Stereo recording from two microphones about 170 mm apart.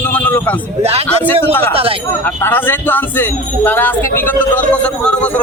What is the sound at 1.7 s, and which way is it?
Speech, 35° right (ahead or behind).